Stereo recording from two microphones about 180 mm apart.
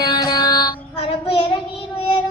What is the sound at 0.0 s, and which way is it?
Music, 20° left (ahead or behind).